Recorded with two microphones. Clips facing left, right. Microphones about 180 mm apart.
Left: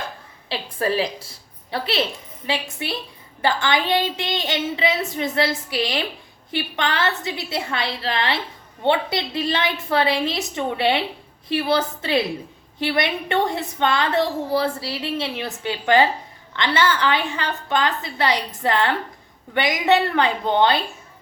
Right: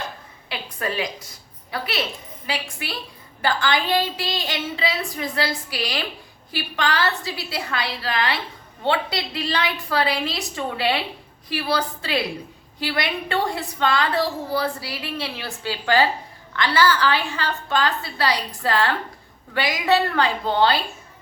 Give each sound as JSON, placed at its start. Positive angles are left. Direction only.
{"t": 0.4, "sound": "a woman's voice", "side_deg": 30}